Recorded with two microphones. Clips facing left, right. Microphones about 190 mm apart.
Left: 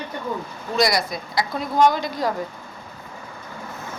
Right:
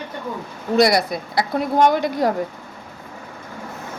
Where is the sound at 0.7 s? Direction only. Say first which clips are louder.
Right 5 dB; 60° right (ahead or behind).